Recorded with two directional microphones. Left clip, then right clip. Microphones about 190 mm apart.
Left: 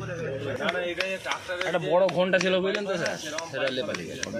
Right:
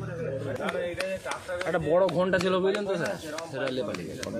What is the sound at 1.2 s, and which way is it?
A man's voice, 55° right (ahead or behind).